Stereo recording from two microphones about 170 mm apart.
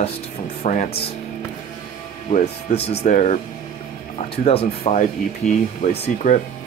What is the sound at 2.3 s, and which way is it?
Speech, 40° left (ahead or behind).